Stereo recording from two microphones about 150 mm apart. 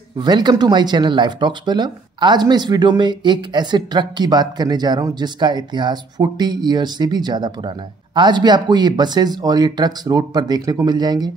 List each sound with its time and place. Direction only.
0.2 s speech: 30° right (ahead or behind)